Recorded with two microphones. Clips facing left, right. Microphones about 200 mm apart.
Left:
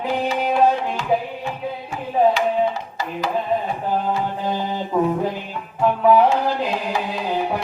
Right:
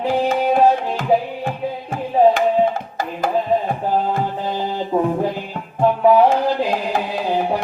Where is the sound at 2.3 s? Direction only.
50° right (ahead or behind).